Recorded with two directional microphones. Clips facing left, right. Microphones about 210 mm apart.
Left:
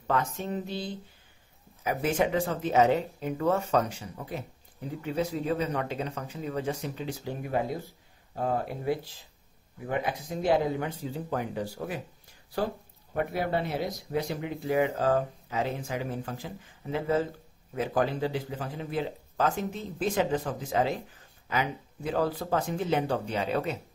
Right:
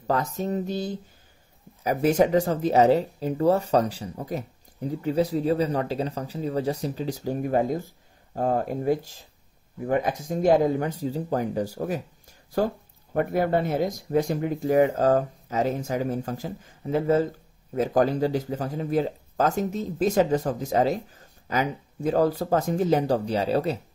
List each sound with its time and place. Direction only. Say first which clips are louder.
0.0 s speech: right 4 dB; 35° right (ahead or behind)